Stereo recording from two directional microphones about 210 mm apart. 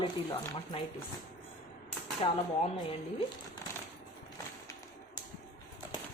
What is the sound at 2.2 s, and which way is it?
Speech, 25° left (ahead or behind).